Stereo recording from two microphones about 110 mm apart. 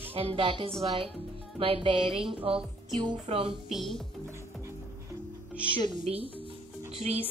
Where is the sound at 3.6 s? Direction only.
Centre (ahead or behind).